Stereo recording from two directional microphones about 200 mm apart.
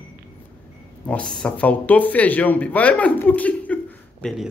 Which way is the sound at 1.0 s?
5° left (ahead or behind).